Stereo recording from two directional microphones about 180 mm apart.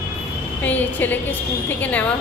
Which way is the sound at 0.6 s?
10° left (ahead or behind).